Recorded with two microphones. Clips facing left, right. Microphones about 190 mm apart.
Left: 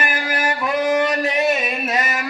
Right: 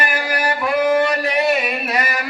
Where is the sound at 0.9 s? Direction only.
20° left (ahead or behind).